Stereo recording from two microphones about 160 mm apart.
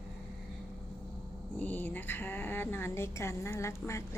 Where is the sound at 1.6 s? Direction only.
10° left (ahead or behind).